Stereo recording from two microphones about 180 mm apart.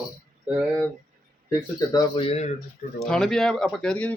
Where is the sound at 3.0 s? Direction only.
Centre (ahead or behind).